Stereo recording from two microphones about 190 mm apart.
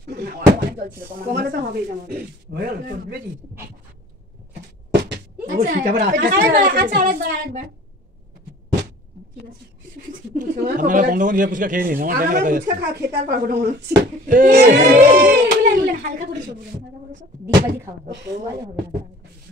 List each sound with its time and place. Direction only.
0.0 s a sound: 55° right (ahead or behind)
1.3 s speech: 50° right (ahead or behind)
5.7 s speech: 55° right (ahead or behind)
10.3 s speech: 45° right (ahead or behind)